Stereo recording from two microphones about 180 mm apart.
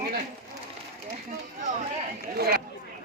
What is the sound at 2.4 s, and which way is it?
Speech, 60° right (ahead or behind).